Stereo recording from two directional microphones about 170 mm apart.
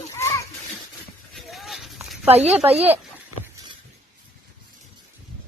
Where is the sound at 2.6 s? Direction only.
35° right (ahead or behind).